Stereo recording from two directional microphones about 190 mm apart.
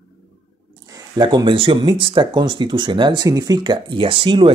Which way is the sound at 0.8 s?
20° right (ahead or behind).